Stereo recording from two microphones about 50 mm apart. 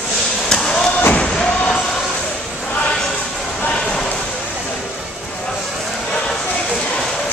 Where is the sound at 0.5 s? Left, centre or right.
Centre.